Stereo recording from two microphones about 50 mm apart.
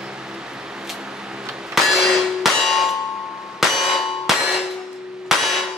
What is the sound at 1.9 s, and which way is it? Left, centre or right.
Clang, centre.